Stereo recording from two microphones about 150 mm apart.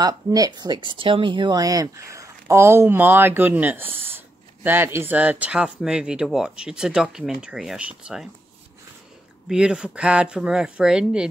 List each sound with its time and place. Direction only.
0.0 s speech: 25° right (ahead or behind); by 8.3 s centre (ahead or behind)
9.5 s speech: 5° right (ahead or behind)